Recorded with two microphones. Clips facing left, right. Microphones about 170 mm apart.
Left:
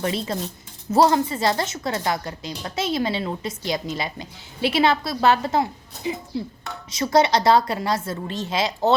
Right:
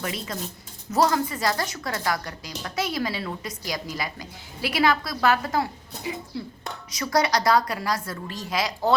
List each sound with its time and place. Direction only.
0.0 s speech: 30° left (ahead or behind)